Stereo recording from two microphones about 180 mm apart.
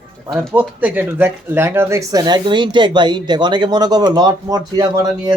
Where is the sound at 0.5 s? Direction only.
10° right (ahead or behind).